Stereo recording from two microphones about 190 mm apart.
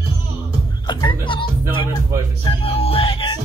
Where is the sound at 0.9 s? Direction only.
25° left (ahead or behind).